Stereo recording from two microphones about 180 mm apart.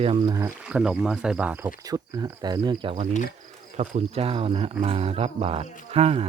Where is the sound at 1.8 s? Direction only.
20° right (ahead or behind).